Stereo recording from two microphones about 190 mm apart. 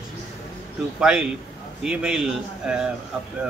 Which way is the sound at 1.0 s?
5° right (ahead or behind).